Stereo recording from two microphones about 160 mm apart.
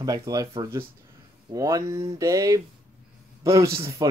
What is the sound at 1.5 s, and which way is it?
A man's voice, 20° right (ahead or behind).